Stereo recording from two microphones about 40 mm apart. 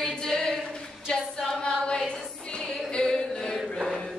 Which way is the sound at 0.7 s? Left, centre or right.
Left.